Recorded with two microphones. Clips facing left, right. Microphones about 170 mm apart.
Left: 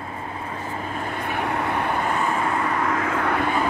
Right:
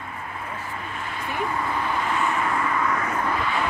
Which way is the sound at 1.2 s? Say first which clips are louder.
Left 1 dB; 70° left (ahead or behind).